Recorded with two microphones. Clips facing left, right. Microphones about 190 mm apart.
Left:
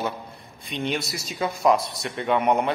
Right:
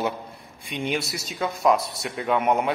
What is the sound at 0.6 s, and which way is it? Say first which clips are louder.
Speech: even; 10° right (ahead or behind).